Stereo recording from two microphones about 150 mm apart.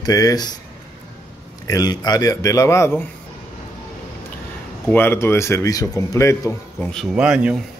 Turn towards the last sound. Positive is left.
turn(degrees=-5)  # may be behind; listen again after turning